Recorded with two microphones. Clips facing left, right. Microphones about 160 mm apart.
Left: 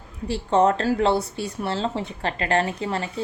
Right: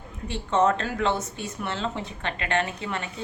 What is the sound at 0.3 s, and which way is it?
Speech, 35° left (ahead or behind).